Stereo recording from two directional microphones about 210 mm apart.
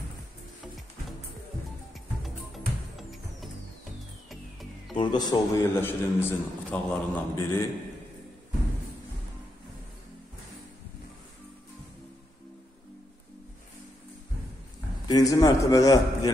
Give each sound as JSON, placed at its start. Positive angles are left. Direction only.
{"t": 2.2, "sound": "music", "side_deg": 0}
{"t": 4.9, "sound": "a man's voice", "side_deg": 20}
{"t": 15.0, "sound": "a man's voice", "side_deg": 15}